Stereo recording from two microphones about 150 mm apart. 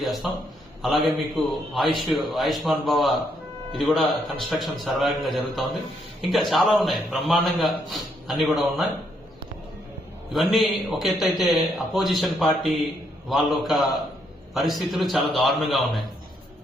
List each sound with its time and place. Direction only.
0.0 s a sound: centre (ahead or behind)
0.8 s a man's voice: centre (ahead or behind)
10.3 s a man's voice: centre (ahead or behind)